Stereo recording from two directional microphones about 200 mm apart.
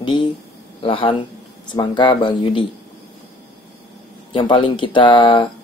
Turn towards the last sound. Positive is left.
turn(degrees=25)  # may be behind; listen again after turning